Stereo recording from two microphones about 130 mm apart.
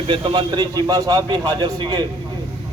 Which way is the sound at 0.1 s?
40° right (ahead or behind).